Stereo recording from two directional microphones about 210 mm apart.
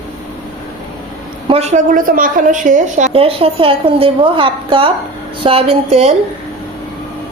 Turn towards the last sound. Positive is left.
turn(degrees=-30)  # may be behind; listen again after turning